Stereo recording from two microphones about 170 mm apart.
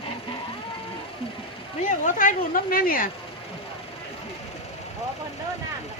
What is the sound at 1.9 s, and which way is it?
Speech, 50° left (ahead or behind).